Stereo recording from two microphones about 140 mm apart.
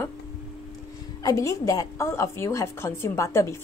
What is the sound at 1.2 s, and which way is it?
A woman's voice, 25° left (ahead or behind).